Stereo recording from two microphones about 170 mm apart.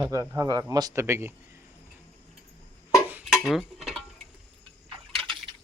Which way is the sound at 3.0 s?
10° right (ahead or behind).